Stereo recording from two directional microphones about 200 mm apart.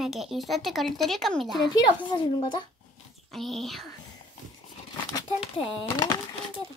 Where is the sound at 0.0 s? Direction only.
Centre (ahead or behind).